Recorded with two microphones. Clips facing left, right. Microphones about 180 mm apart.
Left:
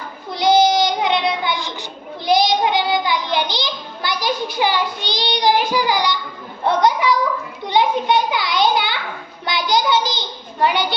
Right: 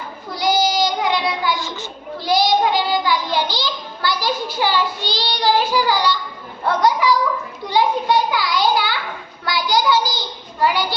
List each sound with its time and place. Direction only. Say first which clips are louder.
0.3 s child singing: left 4 dB; 20° left (ahead or behind)
6.7 s a child's voice: even; 20° left (ahead or behind)